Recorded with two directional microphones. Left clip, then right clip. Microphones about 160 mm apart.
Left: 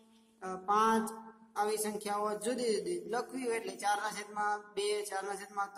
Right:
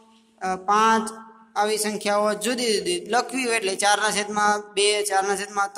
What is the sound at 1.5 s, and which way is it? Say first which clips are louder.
A man's voice: right 11 dB; 15° right (ahead or behind).